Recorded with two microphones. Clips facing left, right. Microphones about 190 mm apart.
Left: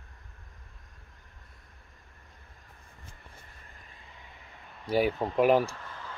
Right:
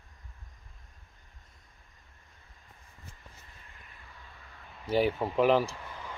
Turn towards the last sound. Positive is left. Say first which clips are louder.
# right 1 dB
turn(degrees=-15)  # may be behind; listen again after turning